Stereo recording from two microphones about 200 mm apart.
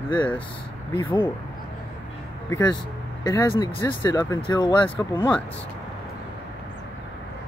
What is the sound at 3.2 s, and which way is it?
Speech, 20° left (ahead or behind).